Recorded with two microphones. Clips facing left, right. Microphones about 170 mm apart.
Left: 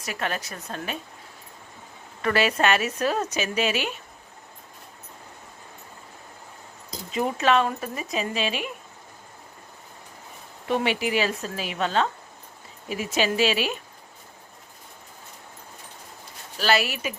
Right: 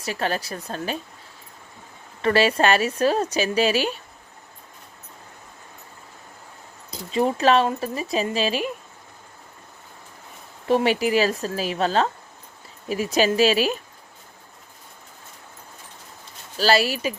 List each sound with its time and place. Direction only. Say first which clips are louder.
0.0 s a woman's voice: right 4 dB; 30° right (ahead or behind)
2.2 s a woman's voice: right 3 dB; 30° right (ahead or behind)
7.1 s a woman's voice: right 4 dB; 35° right (ahead or behind)
10.7 s a woman's voice: right 5 dB; 40° right (ahead or behind)
16.6 s a woman's voice: right 4 dB; 35° right (ahead or behind)